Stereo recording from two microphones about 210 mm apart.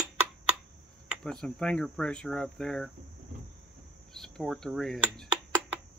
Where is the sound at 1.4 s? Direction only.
5° left (ahead or behind).